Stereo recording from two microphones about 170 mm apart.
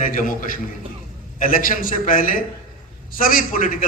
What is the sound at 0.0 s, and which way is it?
A man's voice, 55° left (ahead or behind).